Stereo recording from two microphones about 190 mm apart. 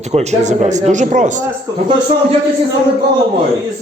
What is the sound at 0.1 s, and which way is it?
A man's voice, 35° right (ahead or behind).